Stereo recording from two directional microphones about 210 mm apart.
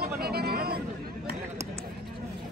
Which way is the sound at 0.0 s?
45° right (ahead or behind).